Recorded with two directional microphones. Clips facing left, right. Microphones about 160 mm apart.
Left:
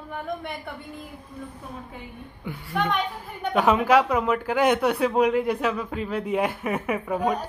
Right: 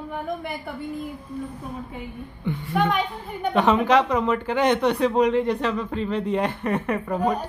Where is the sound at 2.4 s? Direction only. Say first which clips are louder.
Right 4 dB; centre (ahead or behind).